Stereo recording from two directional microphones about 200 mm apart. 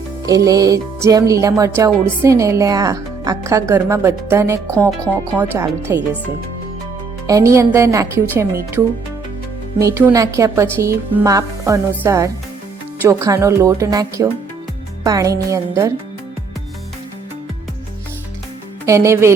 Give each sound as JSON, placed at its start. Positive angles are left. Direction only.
{"t": 0.3, "sound": "speech", "side_deg": -15}
{"t": 7.3, "sound": "speech", "side_deg": -15}
{"t": 9.7, "sound": "speech", "side_deg": -15}
{"t": 18.9, "sound": "speech", "side_deg": -15}